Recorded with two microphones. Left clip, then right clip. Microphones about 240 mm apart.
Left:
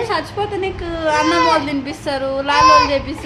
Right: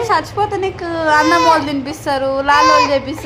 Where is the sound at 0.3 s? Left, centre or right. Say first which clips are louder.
Right 4 dB; centre.